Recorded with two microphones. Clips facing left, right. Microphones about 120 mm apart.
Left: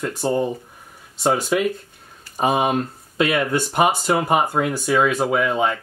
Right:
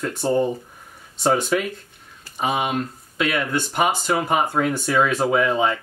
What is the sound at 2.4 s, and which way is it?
Speech, 40° left (ahead or behind).